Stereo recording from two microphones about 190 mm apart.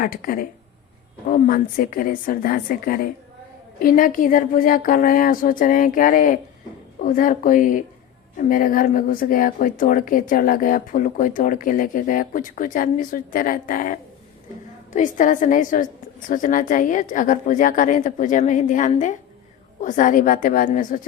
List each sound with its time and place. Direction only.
0.0 s a woman's voice: 50° left (ahead or behind)